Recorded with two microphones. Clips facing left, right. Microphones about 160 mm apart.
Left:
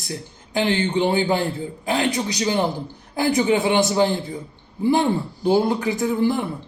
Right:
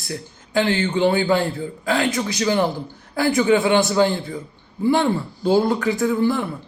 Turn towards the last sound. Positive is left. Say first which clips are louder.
# right 1 dB
turn(degrees=20)  # may be behind; listen again after turning